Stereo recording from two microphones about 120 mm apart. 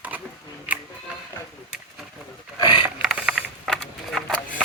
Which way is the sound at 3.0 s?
5° right (ahead or behind).